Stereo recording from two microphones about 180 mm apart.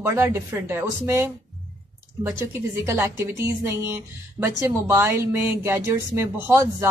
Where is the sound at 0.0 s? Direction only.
15° right (ahead or behind).